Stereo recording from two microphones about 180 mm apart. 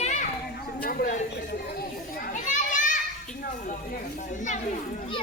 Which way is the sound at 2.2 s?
45° left (ahead or behind).